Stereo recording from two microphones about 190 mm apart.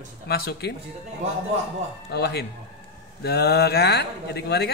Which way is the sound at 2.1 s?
60° left (ahead or behind).